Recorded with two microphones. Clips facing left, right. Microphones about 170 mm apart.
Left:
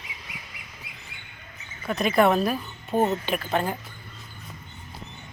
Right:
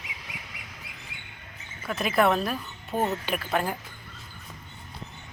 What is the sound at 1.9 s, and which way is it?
Speech, 5° right (ahead or behind).